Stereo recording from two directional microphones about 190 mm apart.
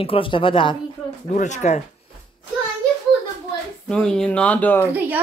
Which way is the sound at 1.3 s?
40° left (ahead or behind).